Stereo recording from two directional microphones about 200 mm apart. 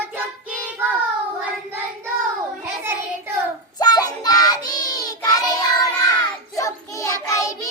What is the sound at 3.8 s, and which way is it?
Child singing, 20° left (ahead or behind).